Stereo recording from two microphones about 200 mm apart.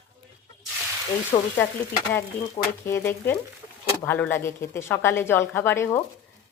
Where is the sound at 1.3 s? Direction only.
15° left (ahead or behind).